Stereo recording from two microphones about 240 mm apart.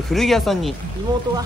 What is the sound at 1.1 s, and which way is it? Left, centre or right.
Speech, centre.